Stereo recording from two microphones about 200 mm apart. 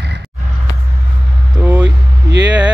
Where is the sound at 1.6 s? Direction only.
5° right (ahead or behind).